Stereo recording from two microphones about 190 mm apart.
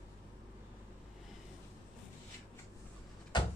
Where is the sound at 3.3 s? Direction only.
25° left (ahead or behind).